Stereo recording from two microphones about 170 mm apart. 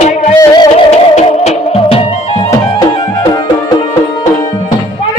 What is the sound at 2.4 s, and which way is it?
Music, 20° left (ahead or behind).